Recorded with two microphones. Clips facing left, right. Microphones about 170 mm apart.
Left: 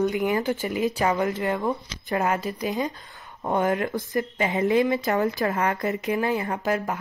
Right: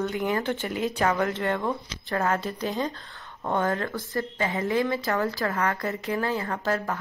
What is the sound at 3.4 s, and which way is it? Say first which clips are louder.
A woman's voice: left 3 dB; 20° left (ahead or behind).